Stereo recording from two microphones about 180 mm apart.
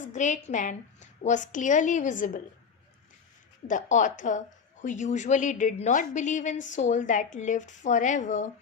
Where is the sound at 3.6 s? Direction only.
45° left (ahead or behind).